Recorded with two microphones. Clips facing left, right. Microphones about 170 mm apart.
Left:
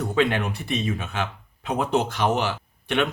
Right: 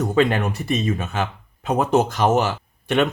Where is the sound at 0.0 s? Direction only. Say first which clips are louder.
Right 4 dB; 45° right (ahead or behind).